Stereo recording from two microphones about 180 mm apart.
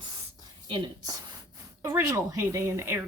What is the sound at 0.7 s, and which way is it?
Speech, 25° right (ahead or behind).